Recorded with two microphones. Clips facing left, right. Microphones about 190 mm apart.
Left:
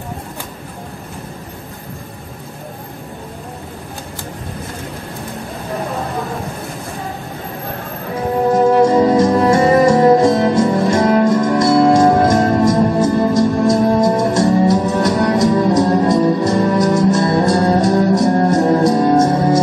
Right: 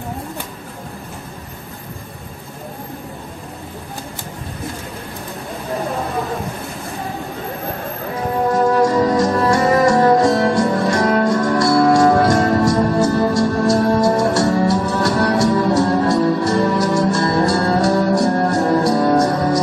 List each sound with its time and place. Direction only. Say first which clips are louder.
8.5 s music: left 4 dB; 25° left (ahead or behind)